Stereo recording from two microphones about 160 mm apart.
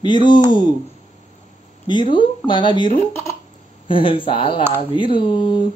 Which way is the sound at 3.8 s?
35° left (ahead or behind).